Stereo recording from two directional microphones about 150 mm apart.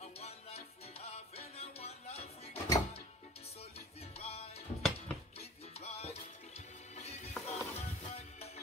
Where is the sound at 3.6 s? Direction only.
40° left (ahead or behind).